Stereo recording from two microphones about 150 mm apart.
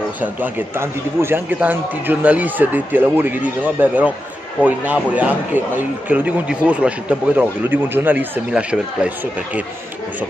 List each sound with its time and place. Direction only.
0.2 s speech: 10° right (ahead or behind)